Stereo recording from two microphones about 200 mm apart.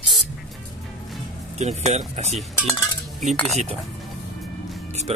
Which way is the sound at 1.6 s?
35° right (ahead or behind).